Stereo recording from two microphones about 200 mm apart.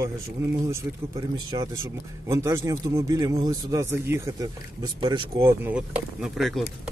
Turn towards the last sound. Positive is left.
turn(degrees=0)  # may be behind; listen again after turning